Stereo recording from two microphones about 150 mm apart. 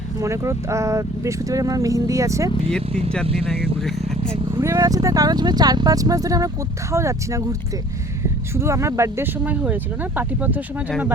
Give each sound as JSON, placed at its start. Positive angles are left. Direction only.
{"t": 0.2, "sound": "speech", "side_deg": -20}
{"t": 4.5, "sound": "speech", "side_deg": -20}
{"t": 8.5, "sound": "speech", "side_deg": -20}